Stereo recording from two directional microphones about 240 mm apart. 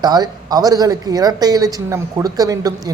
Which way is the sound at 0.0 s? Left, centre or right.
Centre.